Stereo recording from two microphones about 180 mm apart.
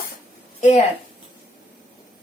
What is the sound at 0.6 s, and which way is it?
Speech, 40° left (ahead or behind).